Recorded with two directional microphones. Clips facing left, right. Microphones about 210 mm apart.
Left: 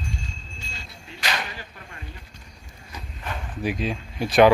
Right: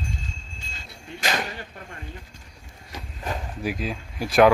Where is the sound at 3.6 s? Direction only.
Centre (ahead or behind).